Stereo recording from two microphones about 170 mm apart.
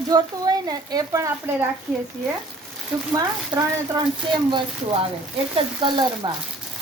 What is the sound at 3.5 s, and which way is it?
Speech, 25° right (ahead or behind).